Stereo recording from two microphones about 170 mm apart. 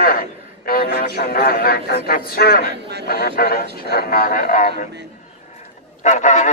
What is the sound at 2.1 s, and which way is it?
A man's voice, 60° left (ahead or behind).